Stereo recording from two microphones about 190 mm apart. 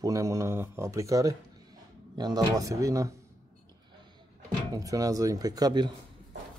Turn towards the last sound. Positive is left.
turn(degrees=-20)  # may be behind; listen again after turning